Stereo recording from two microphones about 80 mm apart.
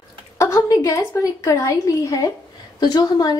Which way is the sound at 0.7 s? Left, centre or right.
Left.